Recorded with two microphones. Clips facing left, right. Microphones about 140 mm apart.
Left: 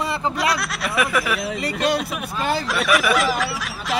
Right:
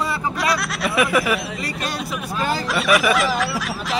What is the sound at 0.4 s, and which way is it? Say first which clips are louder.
Speech: right 1 dB; centre (ahead or behind).